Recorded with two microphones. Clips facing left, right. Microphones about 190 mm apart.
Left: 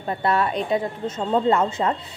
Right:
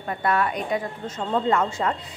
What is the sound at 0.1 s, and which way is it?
Speech, 25° left (ahead or behind).